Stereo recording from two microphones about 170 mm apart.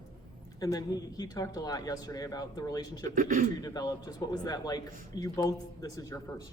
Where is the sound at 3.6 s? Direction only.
25° left (ahead or behind).